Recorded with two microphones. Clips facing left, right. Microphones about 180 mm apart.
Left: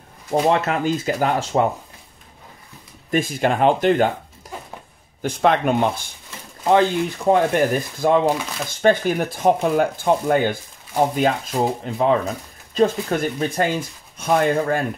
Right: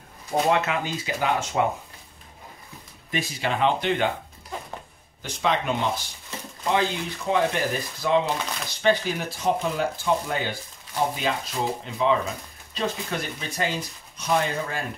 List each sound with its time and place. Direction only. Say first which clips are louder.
0.5 s speech: left 5 dB; 45° left (ahead or behind)
3.1 s speech: left 8 dB; 50° left (ahead or behind)
5.2 s speech: left 7 dB; 55° left (ahead or behind)